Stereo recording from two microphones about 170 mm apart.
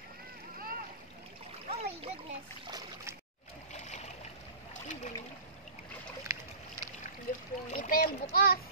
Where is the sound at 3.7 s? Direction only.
45° left (ahead or behind).